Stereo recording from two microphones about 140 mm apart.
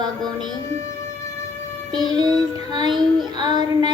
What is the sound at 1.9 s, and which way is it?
Female singing, 30° right (ahead or behind).